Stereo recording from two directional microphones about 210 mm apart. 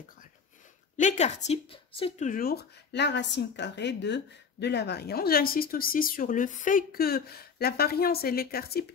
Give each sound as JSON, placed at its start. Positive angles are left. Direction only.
{"t": 0.9, "sound": "speech", "side_deg": 35}